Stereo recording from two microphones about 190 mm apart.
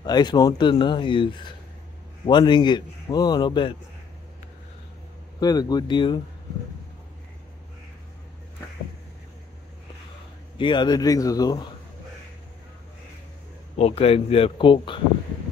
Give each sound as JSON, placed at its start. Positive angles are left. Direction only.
{"t": 0.0, "sound": "a man's voice", "side_deg": 20}
{"t": 5.4, "sound": "a man's voice", "side_deg": 20}
{"t": 10.6, "sound": "a man's voice", "side_deg": 25}
{"t": 13.7, "sound": "a man's voice", "side_deg": 30}